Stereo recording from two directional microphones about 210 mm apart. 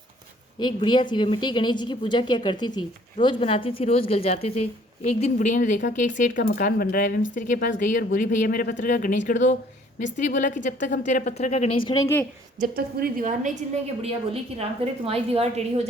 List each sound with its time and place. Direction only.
0.6 s a woman's voice: 20° left (ahead or behind)
12.5 s a woman's voice: 45° right (ahead or behind)
14.6 s a woman's voice: 30° right (ahead or behind)